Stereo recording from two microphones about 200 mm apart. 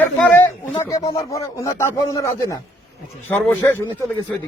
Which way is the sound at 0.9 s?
20° left (ahead or behind).